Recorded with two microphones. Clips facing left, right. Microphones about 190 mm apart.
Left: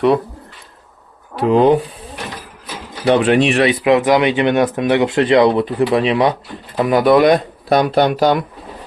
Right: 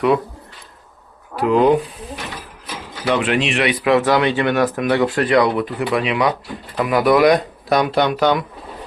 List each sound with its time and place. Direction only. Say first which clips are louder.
1.4 s speech: left 2 dB; 25° left (ahead or behind)
3.0 s speech: left 6 dB; 35° left (ahead or behind)